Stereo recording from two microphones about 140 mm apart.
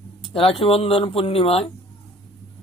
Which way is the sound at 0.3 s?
45° left (ahead or behind).